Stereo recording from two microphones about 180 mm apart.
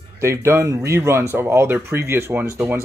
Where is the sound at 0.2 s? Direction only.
15° right (ahead or behind).